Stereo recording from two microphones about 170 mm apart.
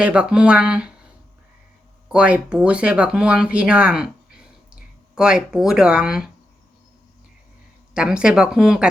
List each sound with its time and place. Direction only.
0.0 s speech: 5° right (ahead or behind)
2.1 s speech: 5° right (ahead or behind)
7.9 s speech: 5° right (ahead or behind)